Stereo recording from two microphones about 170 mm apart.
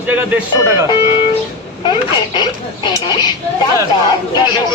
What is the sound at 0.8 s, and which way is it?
Speech, 25° left (ahead or behind).